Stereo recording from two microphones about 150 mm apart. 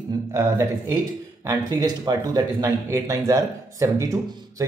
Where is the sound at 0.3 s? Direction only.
20° right (ahead or behind).